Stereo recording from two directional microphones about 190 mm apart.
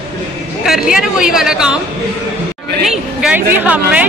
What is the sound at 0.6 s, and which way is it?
A woman's voice, centre (ahead or behind).